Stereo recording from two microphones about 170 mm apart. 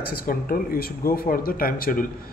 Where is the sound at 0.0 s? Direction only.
60° left (ahead or behind).